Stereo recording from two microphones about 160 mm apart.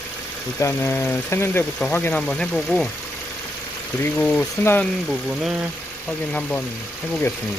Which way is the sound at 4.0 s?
10° left (ahead or behind).